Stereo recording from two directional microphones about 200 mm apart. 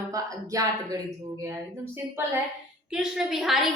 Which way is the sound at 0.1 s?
15° right (ahead or behind).